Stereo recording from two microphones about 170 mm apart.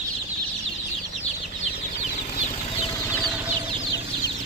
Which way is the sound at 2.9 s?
15° left (ahead or behind).